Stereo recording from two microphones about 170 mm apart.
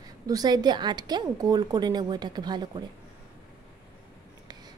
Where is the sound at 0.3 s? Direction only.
25° right (ahead or behind).